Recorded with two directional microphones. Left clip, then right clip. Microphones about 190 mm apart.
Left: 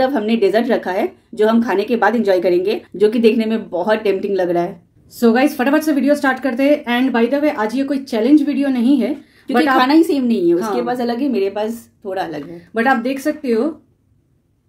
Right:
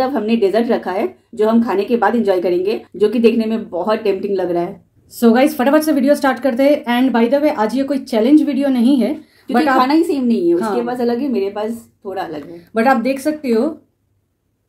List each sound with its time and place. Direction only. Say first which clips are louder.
0.0 s a woman's voice: even; 25° left (ahead or behind)
5.2 s speech: right 2 dB; 10° right (ahead or behind)
9.8 s a woman's voice: left 1 dB; 25° left (ahead or behind)
12.7 s speech: right 2 dB; 10° right (ahead or behind)